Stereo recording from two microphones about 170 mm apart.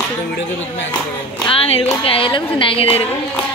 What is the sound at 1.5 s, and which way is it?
A woman's voice, 35° left (ahead or behind).